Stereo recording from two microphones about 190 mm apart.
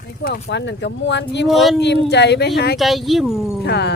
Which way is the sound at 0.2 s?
65° left (ahead or behind).